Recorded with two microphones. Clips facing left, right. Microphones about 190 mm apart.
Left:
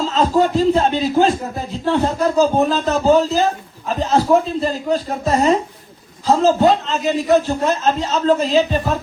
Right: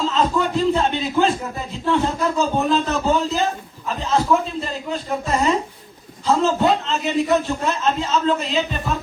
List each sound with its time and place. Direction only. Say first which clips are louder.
0.1 s a man's voice: left 4 dB; 40° left (ahead or behind)